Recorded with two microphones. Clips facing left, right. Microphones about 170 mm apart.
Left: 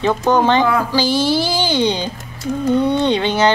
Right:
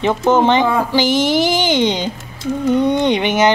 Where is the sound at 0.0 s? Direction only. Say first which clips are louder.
Right 1 dB; 15° right (ahead or behind).